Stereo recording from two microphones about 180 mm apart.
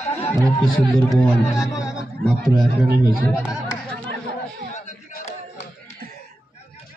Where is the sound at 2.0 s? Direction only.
5° left (ahead or behind).